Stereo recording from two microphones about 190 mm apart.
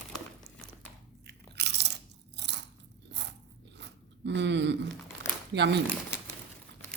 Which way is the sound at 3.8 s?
65° right (ahead or behind).